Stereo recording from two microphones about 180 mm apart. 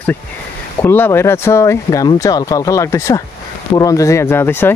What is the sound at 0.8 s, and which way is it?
Speech, 10° left (ahead or behind).